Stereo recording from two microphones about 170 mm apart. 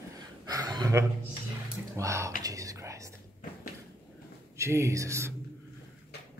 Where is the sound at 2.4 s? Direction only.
20° right (ahead or behind).